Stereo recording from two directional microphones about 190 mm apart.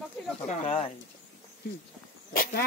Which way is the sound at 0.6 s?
30° left (ahead or behind).